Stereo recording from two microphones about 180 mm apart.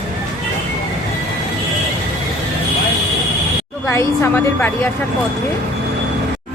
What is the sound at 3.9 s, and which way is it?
Speech, 15° left (ahead or behind).